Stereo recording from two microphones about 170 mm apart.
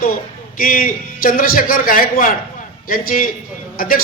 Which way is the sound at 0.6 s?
55° left (ahead or behind).